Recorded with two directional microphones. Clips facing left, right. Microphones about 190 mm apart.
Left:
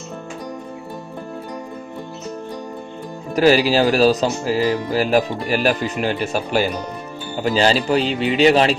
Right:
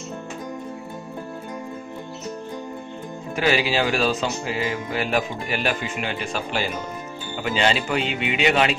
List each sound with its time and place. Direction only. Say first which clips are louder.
3.3 s speech: left 7 dB; 40° left (ahead or behind)